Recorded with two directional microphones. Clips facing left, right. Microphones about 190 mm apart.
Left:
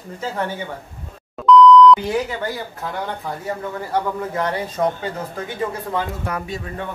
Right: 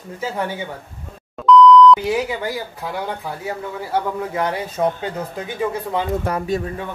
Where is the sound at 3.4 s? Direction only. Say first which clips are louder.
Even; 5° right (ahead or behind).